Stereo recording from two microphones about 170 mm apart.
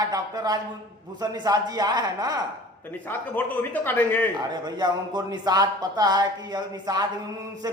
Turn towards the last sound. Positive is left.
turn(degrees=-25)  # may be behind; listen again after turning